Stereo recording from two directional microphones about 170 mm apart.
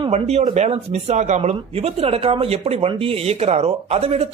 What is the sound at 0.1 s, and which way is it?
Speech, 40° right (ahead or behind).